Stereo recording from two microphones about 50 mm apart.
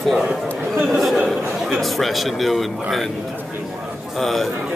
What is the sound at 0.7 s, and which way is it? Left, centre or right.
Speech, centre.